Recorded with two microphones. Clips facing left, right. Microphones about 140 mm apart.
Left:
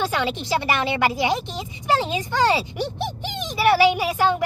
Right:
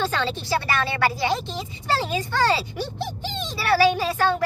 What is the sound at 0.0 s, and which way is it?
Speech, 15° left (ahead or behind).